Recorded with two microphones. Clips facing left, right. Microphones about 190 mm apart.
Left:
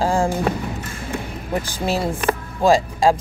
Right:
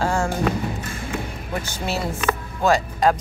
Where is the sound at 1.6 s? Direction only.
30° left (ahead or behind).